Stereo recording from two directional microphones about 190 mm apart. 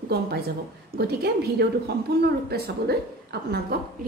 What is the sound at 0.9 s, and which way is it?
A woman's voice, 55° right (ahead or behind).